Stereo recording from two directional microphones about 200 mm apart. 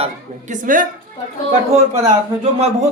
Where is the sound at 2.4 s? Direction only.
30° right (ahead or behind).